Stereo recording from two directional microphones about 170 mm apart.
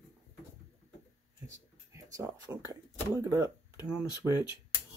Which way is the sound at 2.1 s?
20° right (ahead or behind).